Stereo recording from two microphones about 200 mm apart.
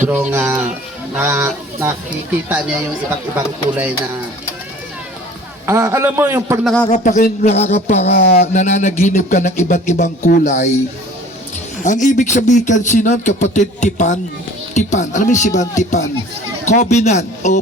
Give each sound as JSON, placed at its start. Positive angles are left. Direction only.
{"t": 0.0, "sound": "a man's voice", "side_deg": -10}
{"t": 3.3, "sound": "a man's voice", "side_deg": -10}
{"t": 5.6, "sound": "a man's voice", "side_deg": -10}
{"t": 6.8, "sound": "speech", "side_deg": 35}
{"t": 11.8, "sound": "speech", "side_deg": 40}